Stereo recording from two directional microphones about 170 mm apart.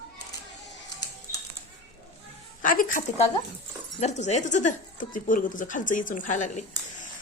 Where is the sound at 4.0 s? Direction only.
40° left (ahead or behind).